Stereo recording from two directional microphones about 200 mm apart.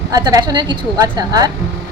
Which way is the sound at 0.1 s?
20° right (ahead or behind).